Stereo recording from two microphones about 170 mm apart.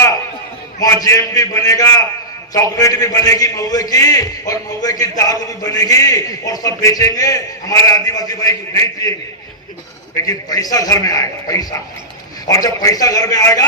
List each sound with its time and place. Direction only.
1.0 s a man's voice: 20° left (ahead or behind)
10.2 s a man's voice: 20° left (ahead or behind)